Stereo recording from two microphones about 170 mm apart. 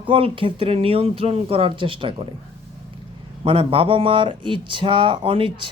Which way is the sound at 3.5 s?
35° right (ahead or behind).